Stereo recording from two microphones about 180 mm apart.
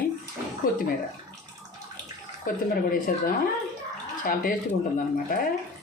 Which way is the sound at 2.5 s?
50° left (ahead or behind).